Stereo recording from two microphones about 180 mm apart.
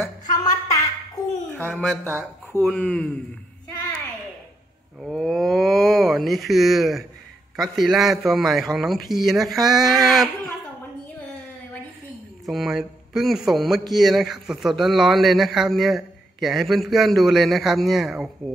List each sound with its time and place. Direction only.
0.4 s a sound: 20° left (ahead or behind)
2.0 s speech: 15° right (ahead or behind)
2.6 s speech: 5° left (ahead or behind)
5.0 s a man's voice: centre (ahead or behind)
12.4 s a man's voice: centre (ahead or behind)